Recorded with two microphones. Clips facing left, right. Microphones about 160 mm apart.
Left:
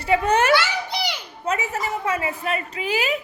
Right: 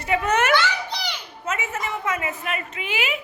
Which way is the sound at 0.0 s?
30° left (ahead or behind).